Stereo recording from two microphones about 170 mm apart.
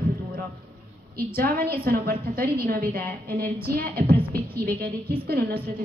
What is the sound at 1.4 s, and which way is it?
A woman's voice, 60° right (ahead or behind).